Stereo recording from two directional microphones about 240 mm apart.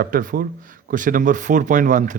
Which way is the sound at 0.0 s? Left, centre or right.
Right.